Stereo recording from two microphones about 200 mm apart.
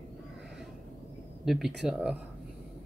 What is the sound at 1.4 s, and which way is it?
Speech, centre (ahead or behind).